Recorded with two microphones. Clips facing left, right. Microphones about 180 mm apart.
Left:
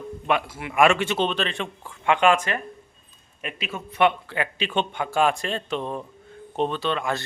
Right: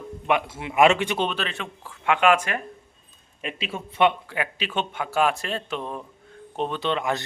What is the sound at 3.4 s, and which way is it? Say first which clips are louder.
Speech: right 1 dB; 30° right (ahead or behind).